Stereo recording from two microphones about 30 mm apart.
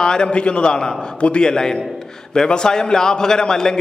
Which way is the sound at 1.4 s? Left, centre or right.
Left.